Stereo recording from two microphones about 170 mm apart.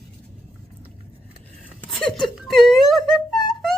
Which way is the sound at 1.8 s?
5° left (ahead or behind).